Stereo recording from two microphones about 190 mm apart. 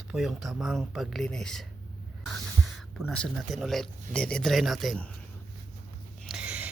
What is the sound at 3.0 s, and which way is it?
Speech, centre (ahead or behind).